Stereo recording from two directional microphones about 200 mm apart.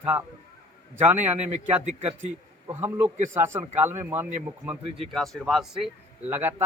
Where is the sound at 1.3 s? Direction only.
35° right (ahead or behind).